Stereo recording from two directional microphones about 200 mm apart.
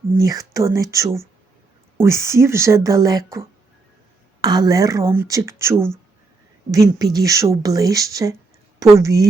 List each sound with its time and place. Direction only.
0.2 s speech: 15° right (ahead or behind)
4.4 s speech: 20° right (ahead or behind)